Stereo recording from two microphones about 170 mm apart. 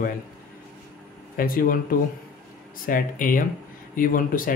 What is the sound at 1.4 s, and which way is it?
Speech, 55° left (ahead or behind).